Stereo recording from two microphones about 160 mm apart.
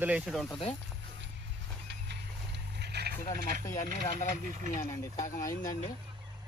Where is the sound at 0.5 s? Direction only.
35° left (ahead or behind).